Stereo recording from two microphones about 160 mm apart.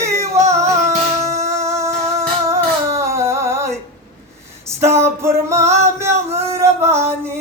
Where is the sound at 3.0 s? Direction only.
15° right (ahead or behind).